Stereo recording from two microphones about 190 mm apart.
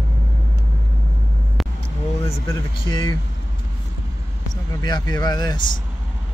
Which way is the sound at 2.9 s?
25° left (ahead or behind).